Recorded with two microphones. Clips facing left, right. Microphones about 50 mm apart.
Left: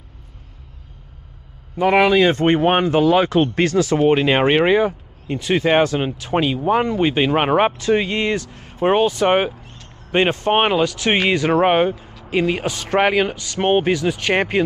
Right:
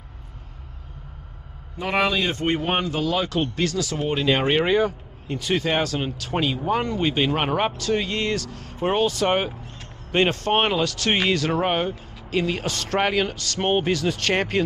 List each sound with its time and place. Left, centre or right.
1.8 s speech: left; by 14.6 s centre